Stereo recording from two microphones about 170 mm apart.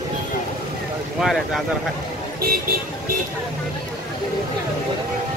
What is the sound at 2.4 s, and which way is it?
Speech, 60° right (ahead or behind).